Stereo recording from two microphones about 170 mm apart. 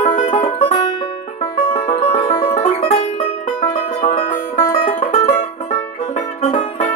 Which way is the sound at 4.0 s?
35° left (ahead or behind).